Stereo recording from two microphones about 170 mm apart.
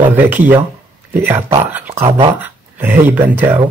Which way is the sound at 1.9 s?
35° right (ahead or behind).